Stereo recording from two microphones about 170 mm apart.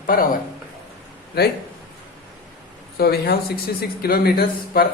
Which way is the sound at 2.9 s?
70° left (ahead or behind).